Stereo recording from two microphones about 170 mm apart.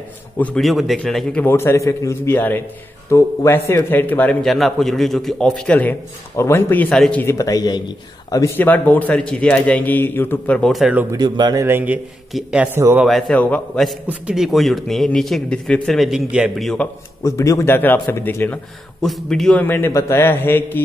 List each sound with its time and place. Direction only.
0.4 s a man's voice: 5° left (ahead or behind)
11.1 s speech: 25° right (ahead or behind)
11.6 s a man's voice: 10° right (ahead or behind)
17.2 s a man's voice: 20° left (ahead or behind)
19.0 s a man's voice: centre (ahead or behind)